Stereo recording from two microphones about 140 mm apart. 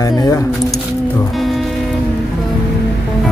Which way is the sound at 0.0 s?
25° left (ahead or behind).